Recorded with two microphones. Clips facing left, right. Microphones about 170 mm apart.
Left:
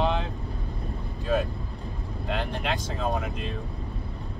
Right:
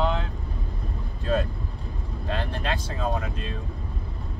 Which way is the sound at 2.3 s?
15° left (ahead or behind).